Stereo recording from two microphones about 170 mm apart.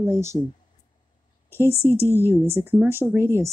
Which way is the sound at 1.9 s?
15° left (ahead or behind).